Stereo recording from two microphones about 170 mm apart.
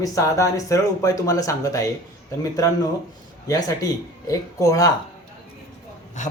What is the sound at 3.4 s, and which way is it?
Speech, 20° left (ahead or behind).